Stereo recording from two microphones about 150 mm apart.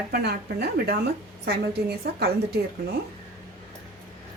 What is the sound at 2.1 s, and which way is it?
Speech, 90° right.